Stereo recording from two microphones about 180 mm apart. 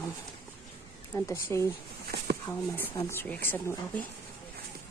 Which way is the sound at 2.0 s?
55° right (ahead or behind).